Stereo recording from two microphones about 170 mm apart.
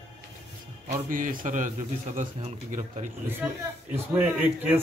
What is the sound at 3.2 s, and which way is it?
Speech, 10° right (ahead or behind).